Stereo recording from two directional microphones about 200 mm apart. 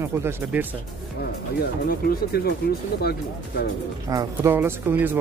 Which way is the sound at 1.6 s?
50° left (ahead or behind).